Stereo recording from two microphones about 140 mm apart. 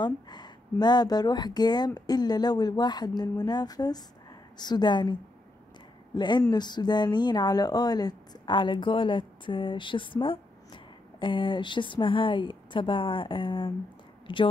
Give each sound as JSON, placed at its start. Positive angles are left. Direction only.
{"t": 0.0, "sound": "speech", "side_deg": 30}